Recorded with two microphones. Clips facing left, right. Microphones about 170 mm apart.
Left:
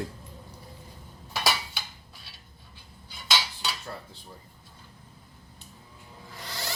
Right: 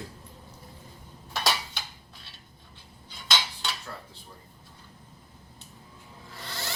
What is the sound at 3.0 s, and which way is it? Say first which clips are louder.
Cutlery: left 1 dB; 5° left (ahead or behind).